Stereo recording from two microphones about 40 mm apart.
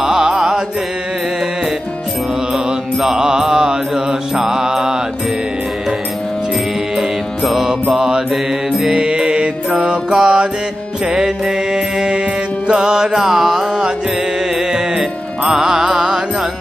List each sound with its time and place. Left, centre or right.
0.0 s music: centre
2.5 s mantra: centre
7.0 s music: centre
7.9 s mantra: centre
9.0 s mantra: right
11.1 s music: centre